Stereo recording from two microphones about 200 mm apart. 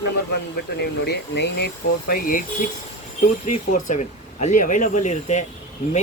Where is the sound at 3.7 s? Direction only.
35° left (ahead or behind).